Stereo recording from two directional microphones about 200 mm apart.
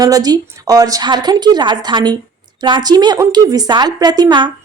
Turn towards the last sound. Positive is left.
turn(degrees=-20)  # may be behind; listen again after turning